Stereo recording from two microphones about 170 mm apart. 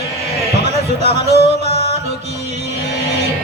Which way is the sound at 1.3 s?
70° left (ahead or behind).